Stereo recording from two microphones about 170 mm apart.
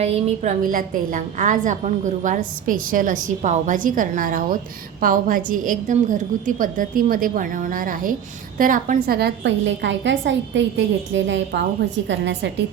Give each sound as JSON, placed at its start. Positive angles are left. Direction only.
{"t": 0.0, "sound": "a woman's voice", "side_deg": -40}
{"t": 0.7, "sound": "a woman's voice", "side_deg": -55}